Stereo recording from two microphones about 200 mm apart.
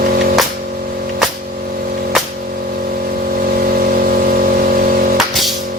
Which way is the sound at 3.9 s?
45° right (ahead or behind).